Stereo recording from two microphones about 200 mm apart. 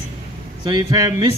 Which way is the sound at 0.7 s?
20° right (ahead or behind).